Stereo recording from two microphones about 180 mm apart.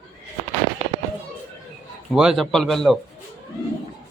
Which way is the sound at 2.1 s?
5° right (ahead or behind).